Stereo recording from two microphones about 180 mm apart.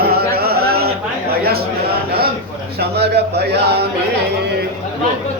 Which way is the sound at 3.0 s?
65° right (ahead or behind).